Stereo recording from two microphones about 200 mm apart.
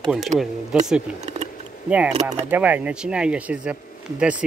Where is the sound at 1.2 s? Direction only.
35° right (ahead or behind).